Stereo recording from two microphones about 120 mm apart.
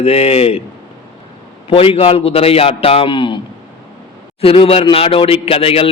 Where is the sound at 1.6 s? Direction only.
50° left (ahead or behind).